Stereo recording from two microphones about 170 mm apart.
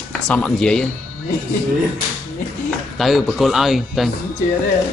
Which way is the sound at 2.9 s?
Centre (ahead or behind).